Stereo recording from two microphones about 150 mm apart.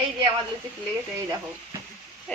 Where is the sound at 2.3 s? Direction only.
5° left (ahead or behind).